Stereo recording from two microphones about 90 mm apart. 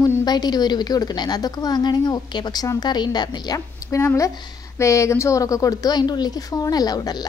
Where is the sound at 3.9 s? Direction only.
35° left (ahead or behind).